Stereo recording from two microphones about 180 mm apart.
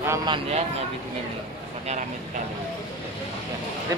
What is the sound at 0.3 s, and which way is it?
Speech, 35° right (ahead or behind).